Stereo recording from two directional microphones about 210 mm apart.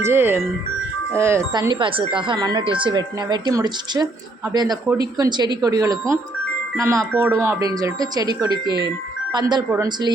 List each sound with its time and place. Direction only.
0.0 s speech: 10° right (ahead or behind)